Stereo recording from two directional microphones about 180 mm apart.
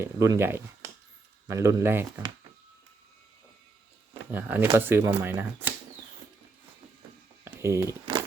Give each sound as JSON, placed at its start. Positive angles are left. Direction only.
{"t": 0.0, "sound": "speech", "side_deg": -15}
{"t": 4.1, "sound": "speech", "side_deg": -10}
{"t": 7.4, "sound": "a sound", "side_deg": -15}